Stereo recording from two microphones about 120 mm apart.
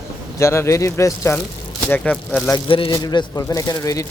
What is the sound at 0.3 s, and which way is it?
Speech, 25° left (ahead or behind).